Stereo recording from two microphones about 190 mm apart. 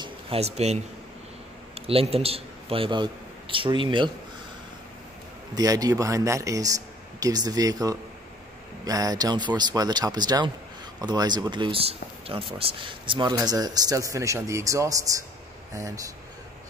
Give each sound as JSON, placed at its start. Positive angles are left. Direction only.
{"t": 0.0, "sound": "a man's voice", "side_deg": -30}
{"t": 5.5, "sound": "speech", "side_deg": -20}